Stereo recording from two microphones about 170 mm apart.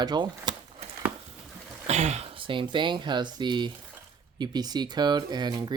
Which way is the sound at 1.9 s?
40° right (ahead or behind).